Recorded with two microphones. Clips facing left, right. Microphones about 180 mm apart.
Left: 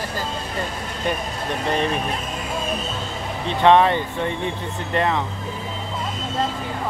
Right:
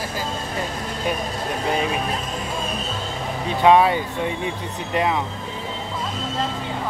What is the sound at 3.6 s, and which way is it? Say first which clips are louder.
Speech: even; 10° right (ahead or behind).